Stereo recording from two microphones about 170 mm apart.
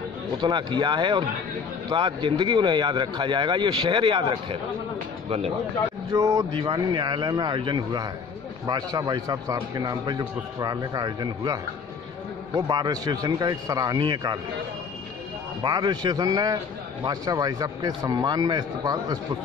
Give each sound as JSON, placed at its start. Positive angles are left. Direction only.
{"t": 0.4, "sound": "a man's voice", "side_deg": -25}
{"t": 6.1, "sound": "a man's voice", "side_deg": -20}
{"t": 15.6, "sound": "a man's voice", "side_deg": -25}